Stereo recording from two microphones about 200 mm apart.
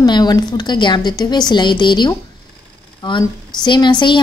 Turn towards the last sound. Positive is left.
turn(degrees=25)  # may be behind; listen again after turning